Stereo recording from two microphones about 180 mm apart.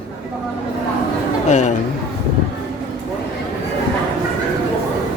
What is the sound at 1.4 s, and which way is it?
Speech, 40° left (ahead or behind).